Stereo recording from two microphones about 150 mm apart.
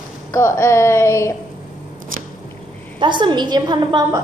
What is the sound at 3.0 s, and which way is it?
A woman's voice, 30° right (ahead or behind).